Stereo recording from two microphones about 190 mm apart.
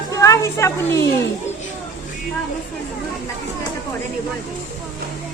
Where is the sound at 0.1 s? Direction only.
15° left (ahead or behind).